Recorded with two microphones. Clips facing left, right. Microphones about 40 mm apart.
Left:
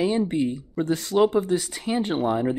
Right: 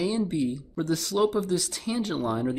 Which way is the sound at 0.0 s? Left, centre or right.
Left.